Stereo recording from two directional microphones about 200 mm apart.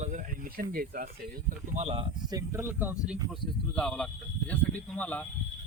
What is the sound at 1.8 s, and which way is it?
Speech, 30° right (ahead or behind).